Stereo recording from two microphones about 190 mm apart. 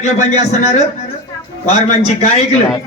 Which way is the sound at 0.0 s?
35° left (ahead or behind).